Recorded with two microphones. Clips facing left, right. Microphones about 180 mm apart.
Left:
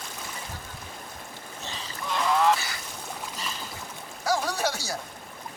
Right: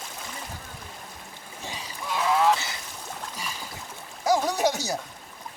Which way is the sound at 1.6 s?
10° right (ahead or behind).